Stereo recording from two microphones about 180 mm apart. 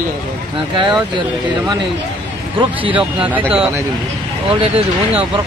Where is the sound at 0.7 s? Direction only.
25° right (ahead or behind).